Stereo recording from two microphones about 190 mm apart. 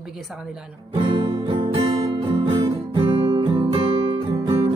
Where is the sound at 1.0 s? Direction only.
25° right (ahead or behind).